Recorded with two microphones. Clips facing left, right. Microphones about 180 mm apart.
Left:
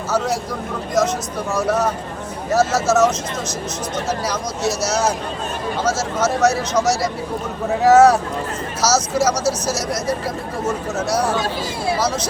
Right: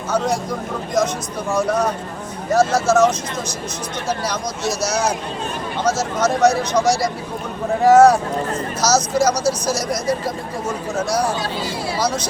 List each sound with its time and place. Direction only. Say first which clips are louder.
1.5 s speech: even; 5° left (ahead or behind)
4.8 s speech: right 1 dB; 5° left (ahead or behind)
9.3 s speech: right 1 dB; 25° left (ahead or behind)
9.6 s speech: right 1 dB; 5° left (ahead or behind)